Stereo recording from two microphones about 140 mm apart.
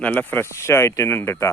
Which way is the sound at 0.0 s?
10° left (ahead or behind).